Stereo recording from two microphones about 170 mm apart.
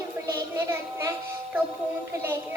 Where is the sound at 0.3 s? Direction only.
15° right (ahead or behind).